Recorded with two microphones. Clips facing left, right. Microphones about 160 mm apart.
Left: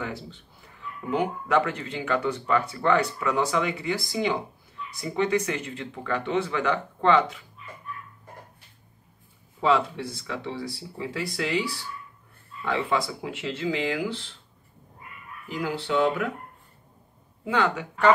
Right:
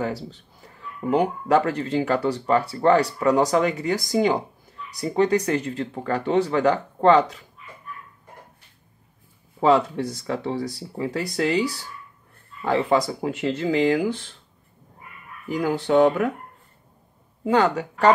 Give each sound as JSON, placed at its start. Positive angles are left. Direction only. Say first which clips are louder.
{"t": 0.0, "sound": "speech", "louder": "right 6 dB", "side_deg": -40}
{"t": 9.6, "sound": "speech", "louder": "right 5 dB", "side_deg": -40}
{"t": 15.4, "sound": "speech", "louder": "right 6 dB", "side_deg": -45}
{"t": 17.5, "sound": "speech", "louder": "right 5 dB", "side_deg": -40}